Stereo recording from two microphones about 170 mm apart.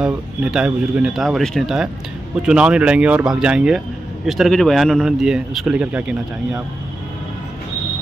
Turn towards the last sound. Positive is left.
turn(degrees=-5)  # may be behind; listen again after turning